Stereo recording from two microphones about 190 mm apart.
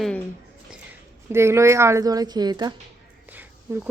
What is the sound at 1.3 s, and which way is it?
A woman's voice, 15° right (ahead or behind).